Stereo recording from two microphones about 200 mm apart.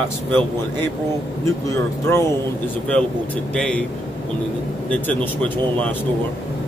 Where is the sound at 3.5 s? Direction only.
5° left (ahead or behind).